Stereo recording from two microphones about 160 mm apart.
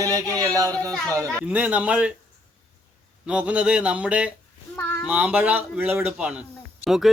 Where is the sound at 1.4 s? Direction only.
10° right (ahead or behind).